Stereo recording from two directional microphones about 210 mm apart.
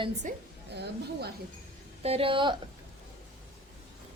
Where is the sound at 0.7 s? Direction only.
55° right (ahead or behind).